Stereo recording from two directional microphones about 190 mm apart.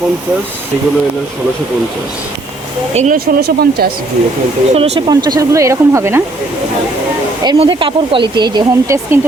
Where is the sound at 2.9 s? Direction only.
45° right (ahead or behind).